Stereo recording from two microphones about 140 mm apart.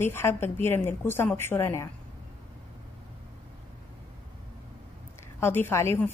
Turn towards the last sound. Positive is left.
turn(degrees=20)  # may be behind; listen again after turning